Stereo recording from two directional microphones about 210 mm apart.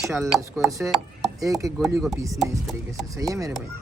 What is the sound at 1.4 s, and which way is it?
Speech, 15° right (ahead or behind).